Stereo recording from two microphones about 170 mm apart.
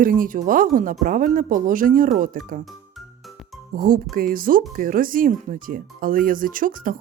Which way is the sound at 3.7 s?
55° right (ahead or behind).